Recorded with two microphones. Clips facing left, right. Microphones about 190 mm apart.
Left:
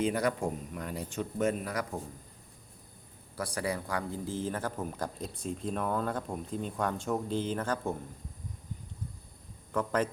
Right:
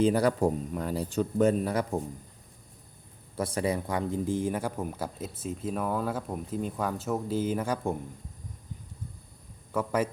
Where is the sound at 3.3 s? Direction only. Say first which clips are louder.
Right 5 dB; 25° right (ahead or behind).